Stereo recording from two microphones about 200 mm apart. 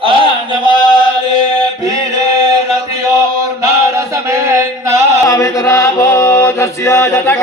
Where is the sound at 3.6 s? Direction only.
15° right (ahead or behind).